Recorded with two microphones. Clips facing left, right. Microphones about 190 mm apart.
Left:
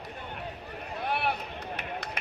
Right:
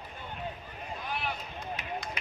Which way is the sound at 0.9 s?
65° left (ahead or behind).